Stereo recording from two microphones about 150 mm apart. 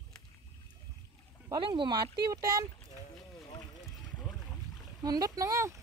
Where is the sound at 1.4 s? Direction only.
30° right (ahead or behind).